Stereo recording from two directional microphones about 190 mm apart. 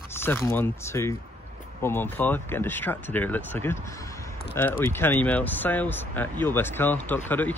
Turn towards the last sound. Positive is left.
turn(degrees=10)  # may be behind; listen again after turning